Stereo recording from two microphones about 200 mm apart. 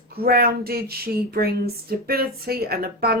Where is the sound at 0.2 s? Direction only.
50° right (ahead or behind).